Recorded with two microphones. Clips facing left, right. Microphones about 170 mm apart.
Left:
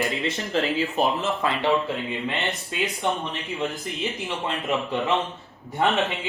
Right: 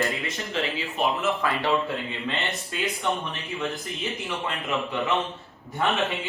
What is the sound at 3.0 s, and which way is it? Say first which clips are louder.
Speech: left 2 dB; 20° left (ahead or behind).